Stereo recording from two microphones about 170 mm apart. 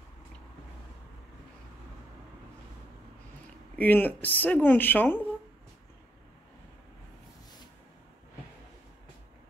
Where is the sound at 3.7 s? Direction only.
10° left (ahead or behind).